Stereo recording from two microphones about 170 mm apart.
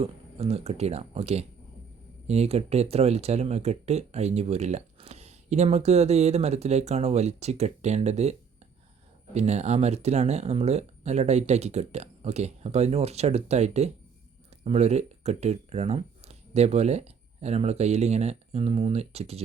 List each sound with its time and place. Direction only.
0.0 s speech: 35° right (ahead or behind)